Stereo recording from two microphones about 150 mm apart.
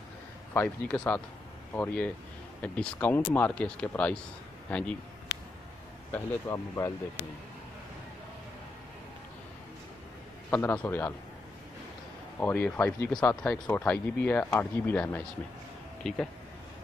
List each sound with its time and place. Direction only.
0.5 s speech: 10° left (ahead or behind)
6.1 s speech: 20° left (ahead or behind)
10.5 s speech: 10° left (ahead or behind)
12.4 s speech: 10° left (ahead or behind)